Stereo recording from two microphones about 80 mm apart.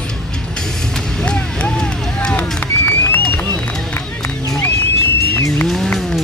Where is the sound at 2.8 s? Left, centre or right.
Left.